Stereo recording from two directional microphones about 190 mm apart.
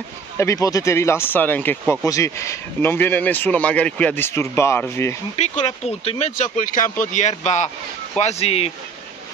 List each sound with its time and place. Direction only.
0.4 s speech: 15° left (ahead or behind)
5.3 s speech: 35° left (ahead or behind)